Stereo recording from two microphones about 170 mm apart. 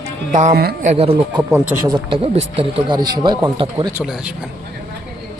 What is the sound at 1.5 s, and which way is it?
Speech, 10° right (ahead or behind).